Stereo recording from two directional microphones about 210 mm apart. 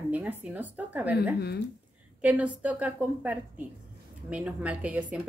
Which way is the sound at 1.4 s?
50° left (ahead or behind).